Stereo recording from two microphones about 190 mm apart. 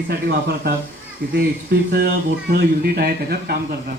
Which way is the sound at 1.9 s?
55° right (ahead or behind).